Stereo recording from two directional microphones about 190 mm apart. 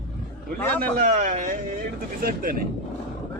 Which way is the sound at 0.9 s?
45° right (ahead or behind).